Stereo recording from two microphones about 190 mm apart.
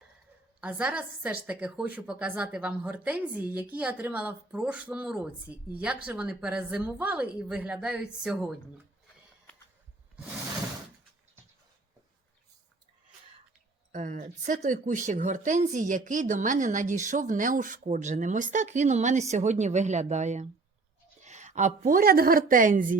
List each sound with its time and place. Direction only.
0.6 s a woman's voice: 10° right (ahead or behind)
13.9 s a woman's voice: 40° right (ahead or behind)